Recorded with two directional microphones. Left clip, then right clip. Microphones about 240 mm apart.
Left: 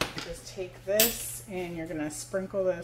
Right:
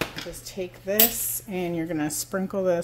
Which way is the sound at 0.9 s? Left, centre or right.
Right.